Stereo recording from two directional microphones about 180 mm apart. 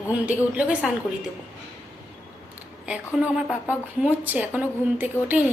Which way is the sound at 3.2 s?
5° right (ahead or behind).